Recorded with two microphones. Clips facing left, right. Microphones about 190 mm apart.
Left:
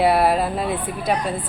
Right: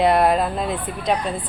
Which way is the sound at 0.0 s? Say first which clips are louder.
Even; 5° left (ahead or behind).